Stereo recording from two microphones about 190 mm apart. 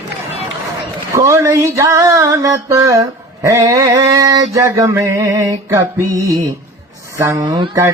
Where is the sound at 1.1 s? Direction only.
15° right (ahead or behind).